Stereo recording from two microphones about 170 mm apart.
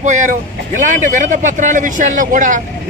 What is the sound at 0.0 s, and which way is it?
A man's voice, 45° right (ahead or behind).